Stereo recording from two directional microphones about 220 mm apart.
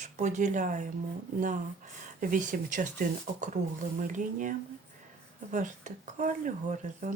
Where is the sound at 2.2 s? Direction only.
40° right (ahead or behind).